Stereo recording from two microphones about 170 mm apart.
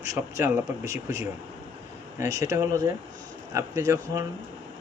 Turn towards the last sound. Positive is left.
turn(degrees=-15)  # may be behind; listen again after turning